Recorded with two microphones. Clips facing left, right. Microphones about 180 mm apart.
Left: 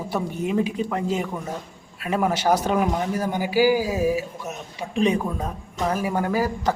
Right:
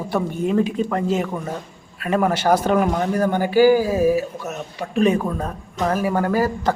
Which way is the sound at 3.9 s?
45° right (ahead or behind).